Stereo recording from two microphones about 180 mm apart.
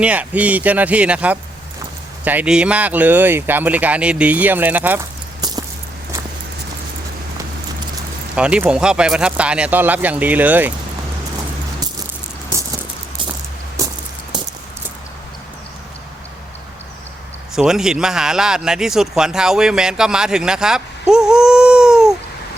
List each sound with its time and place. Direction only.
0.0 s speech: 10° right (ahead or behind)
5.4 s a sound: 20° right (ahead or behind)
8.4 s speech: 5° right (ahead or behind)
17.5 s speech: 5° right (ahead or behind)